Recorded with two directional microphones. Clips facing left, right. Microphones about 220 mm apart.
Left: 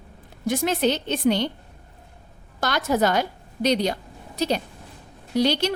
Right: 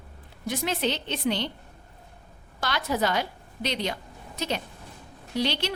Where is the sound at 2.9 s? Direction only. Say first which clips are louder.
Left 5 dB; 45° left (ahead or behind).